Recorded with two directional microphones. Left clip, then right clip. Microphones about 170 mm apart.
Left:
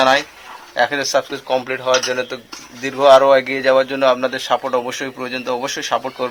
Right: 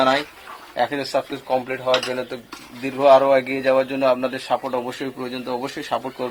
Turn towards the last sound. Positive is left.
turn(degrees=15)  # may be behind; listen again after turning